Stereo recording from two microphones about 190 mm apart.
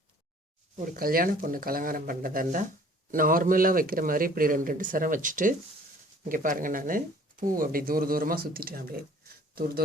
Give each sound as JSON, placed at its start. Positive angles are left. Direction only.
{"t": 0.9, "sound": "speech", "side_deg": -50}